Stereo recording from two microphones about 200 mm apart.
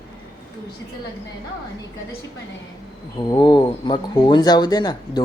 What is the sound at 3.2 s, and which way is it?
Speech, 20° left (ahead or behind).